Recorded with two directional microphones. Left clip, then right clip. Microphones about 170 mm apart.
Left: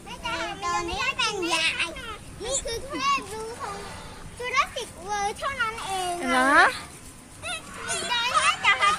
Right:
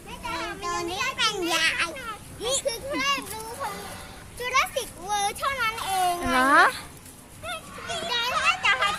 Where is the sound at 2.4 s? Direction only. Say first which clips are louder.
Right 3 dB; 60° right (ahead or behind).